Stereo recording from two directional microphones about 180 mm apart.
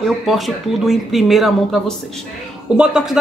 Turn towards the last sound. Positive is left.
turn(degrees=-5)  # may be behind; listen again after turning